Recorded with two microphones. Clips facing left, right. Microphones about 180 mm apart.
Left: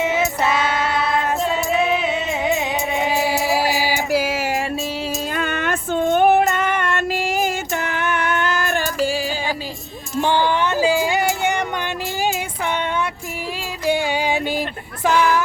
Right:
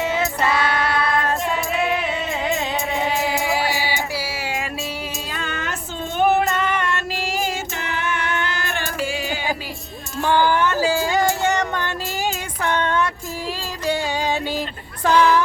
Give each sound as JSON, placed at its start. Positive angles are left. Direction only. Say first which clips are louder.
{"t": 0.0, "sound": "child singing", "louder": "left 2 dB", "side_deg": 20}
{"t": 3.8, "sound": "music", "louder": "left 6 dB", "side_deg": 50}
{"t": 5.4, "sound": "female singing", "louder": "left 4 dB", "side_deg": 55}
{"t": 10.2, "sound": "a sound", "louder": "even", "side_deg": 20}
{"t": 13.8, "sound": "music", "louder": "left 3 dB", "side_deg": 10}
{"t": 15.0, "sound": "a sound", "louder": "right 1 dB", "side_deg": 10}